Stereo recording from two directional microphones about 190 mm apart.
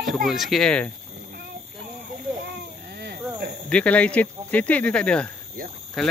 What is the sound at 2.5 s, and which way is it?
Babbling, 60° right (ahead or behind).